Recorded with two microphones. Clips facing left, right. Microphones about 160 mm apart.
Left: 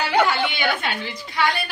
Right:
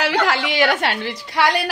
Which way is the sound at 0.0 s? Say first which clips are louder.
Even; 90° right.